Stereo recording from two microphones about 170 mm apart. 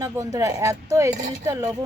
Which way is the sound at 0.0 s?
20° right (ahead or behind).